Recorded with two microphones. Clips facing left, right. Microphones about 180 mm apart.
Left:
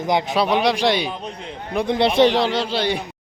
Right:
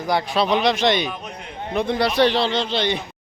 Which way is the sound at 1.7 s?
20° left (ahead or behind).